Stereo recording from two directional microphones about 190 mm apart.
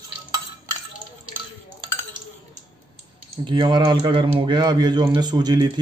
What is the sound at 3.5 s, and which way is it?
Speech, 25° right (ahead or behind).